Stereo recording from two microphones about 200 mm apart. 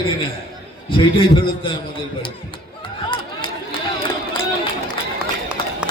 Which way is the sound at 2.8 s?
25° left (ahead or behind).